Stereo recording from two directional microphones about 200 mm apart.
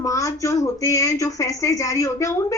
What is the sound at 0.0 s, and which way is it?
A woman's voice, 15° left (ahead or behind).